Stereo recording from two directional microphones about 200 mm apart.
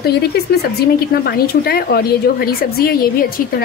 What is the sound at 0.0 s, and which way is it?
Speech, 55° left (ahead or behind).